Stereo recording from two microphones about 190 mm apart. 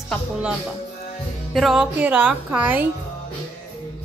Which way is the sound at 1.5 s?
Centre (ahead or behind).